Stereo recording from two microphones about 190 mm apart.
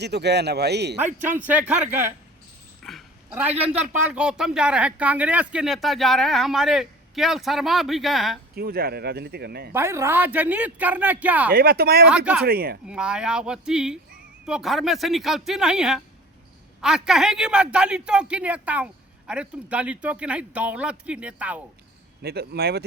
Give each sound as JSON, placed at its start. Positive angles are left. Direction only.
{"t": 0.0, "sound": "speech", "side_deg": -60}
{"t": 1.2, "sound": "speech", "side_deg": -10}
{"t": 2.8, "sound": "dog", "side_deg": 5}
{"t": 3.5, "sound": "speech", "side_deg": -30}
{"t": 3.8, "sound": "speech", "side_deg": -5}
{"t": 8.5, "sound": "speech", "side_deg": -55}
{"t": 9.7, "sound": "speech", "side_deg": -15}
{"t": 11.5, "sound": "speech", "side_deg": -55}
{"t": 12.0, "sound": "speech", "side_deg": -5}
{"t": 12.5, "sound": "speech", "side_deg": -50}
{"t": 12.9, "sound": "speech", "side_deg": -5}
{"t": 22.2, "sound": "speech", "side_deg": -55}